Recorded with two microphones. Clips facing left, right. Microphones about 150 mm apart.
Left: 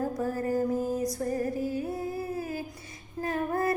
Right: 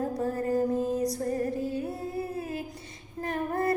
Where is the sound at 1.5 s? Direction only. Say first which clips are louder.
Even; 5° left (ahead or behind).